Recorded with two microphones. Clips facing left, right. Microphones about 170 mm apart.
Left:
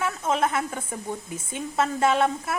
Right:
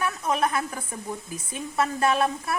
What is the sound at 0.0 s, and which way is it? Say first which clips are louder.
Speech: left 1 dB; 25° left (ahead or behind).